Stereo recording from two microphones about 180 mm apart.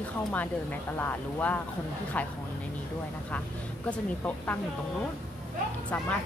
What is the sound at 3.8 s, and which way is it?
Speech, 10° left (ahead or behind).